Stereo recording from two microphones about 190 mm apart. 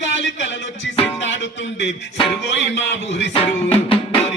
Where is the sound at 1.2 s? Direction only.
70° left (ahead or behind).